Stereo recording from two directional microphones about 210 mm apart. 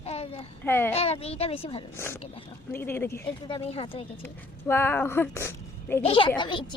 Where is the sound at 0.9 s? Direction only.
30° left (ahead or behind).